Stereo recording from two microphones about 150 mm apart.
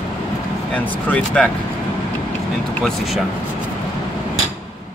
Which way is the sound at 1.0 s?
10° left (ahead or behind).